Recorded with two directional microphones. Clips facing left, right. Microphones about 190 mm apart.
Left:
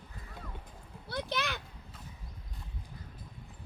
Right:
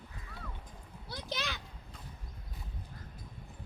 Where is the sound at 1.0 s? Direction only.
60° left (ahead or behind).